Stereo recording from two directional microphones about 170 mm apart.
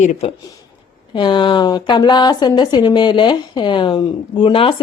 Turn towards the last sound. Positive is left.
turn(degrees=30)  # may be behind; listen again after turning